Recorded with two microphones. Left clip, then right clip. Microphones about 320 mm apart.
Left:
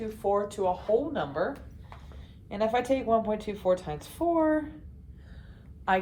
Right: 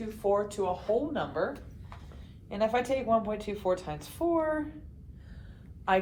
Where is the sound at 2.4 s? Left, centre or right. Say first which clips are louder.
Left 2 dB; left.